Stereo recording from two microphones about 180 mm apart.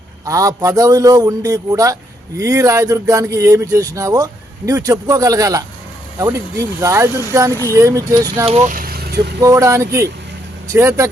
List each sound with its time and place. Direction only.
0.3 s speech: 20° right (ahead or behind)
8.4 s speech: 35° right (ahead or behind)
8.7 s vehicle: 55° right (ahead or behind)
9.4 s speech: 20° right (ahead or behind)